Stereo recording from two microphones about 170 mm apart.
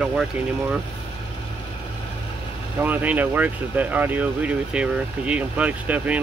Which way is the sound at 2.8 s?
10° right (ahead or behind).